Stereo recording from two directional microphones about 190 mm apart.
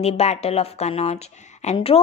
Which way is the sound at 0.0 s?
35° left (ahead or behind).